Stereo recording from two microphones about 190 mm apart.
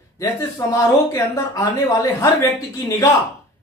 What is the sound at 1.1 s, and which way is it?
Speech, 15° left (ahead or behind).